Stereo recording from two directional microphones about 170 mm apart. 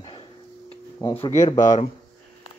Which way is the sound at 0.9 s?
15° left (ahead or behind).